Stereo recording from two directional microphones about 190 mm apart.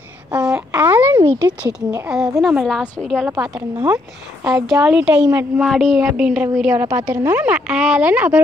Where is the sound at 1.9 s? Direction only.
5° right (ahead or behind).